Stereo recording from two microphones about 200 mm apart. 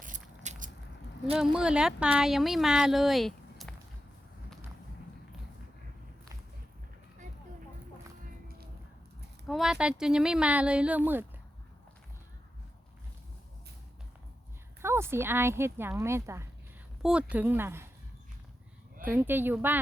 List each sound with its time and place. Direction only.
0.0 s a sound: 40° right (ahead or behind)
1.4 s speech: 5° right (ahead or behind)
8.4 s a sound: 50° right (ahead or behind)
9.5 s speech: centre (ahead or behind)
14.8 s speech: 10° right (ahead or behind)
19.0 s speech: 10° right (ahead or behind)